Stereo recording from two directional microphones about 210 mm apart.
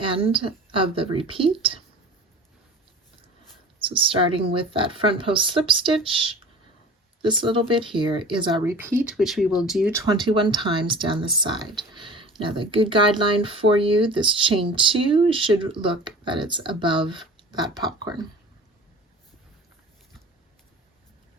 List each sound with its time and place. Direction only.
0.0 s speech: 25° right (ahead or behind)
3.8 s speech: 25° right (ahead or behind)
8.7 s speech: 10° right (ahead or behind)
9.9 s speech: 15° right (ahead or behind)